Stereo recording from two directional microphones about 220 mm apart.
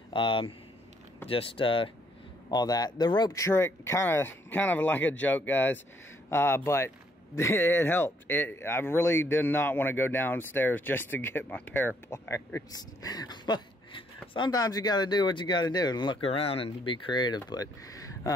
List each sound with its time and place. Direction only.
0.1 s speech: 25° left (ahead or behind)